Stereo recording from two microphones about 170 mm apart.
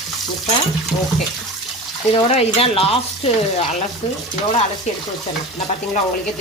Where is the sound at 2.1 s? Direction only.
40° left (ahead or behind).